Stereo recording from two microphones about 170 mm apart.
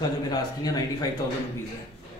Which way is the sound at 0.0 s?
25° left (ahead or behind).